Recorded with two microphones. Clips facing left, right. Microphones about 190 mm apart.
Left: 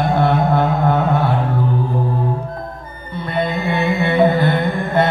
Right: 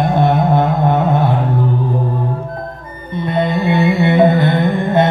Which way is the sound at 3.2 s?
20° right (ahead or behind).